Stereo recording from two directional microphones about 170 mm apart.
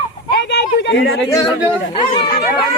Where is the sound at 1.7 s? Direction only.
30° left (ahead or behind).